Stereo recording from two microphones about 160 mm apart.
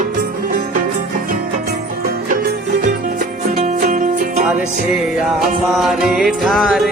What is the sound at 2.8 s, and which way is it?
Music, 55° right (ahead or behind).